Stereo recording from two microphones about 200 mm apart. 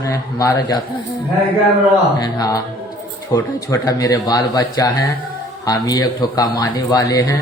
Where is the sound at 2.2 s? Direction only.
20° left (ahead or behind).